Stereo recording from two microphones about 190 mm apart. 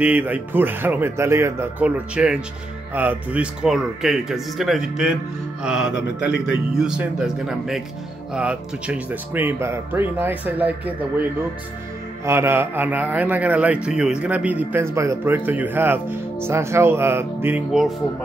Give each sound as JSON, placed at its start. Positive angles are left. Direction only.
{"t": 0.0, "sound": "speech", "side_deg": -10}
{"t": 5.9, "sound": "a man's voice", "side_deg": 70}
{"t": 6.7, "sound": "speech", "side_deg": -5}
{"t": 12.3, "sound": "speech", "side_deg": -15}